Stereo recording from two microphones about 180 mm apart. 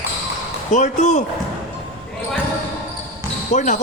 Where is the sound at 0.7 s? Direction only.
40° left (ahead or behind).